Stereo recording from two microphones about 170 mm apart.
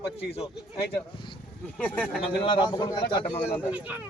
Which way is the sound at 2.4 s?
30° left (ahead or behind).